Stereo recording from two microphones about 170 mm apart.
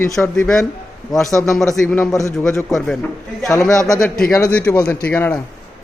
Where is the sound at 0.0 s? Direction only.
15° left (ahead or behind).